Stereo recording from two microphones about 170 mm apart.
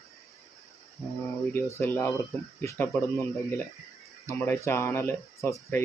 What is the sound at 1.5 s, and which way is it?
Speech, 15° left (ahead or behind).